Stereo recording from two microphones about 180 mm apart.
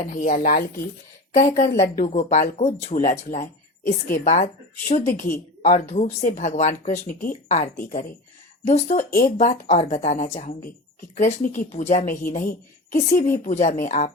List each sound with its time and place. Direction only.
0.1 s speech: 45° left (ahead or behind)